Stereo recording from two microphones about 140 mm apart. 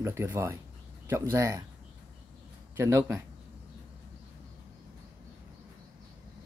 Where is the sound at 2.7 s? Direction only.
20° right (ahead or behind).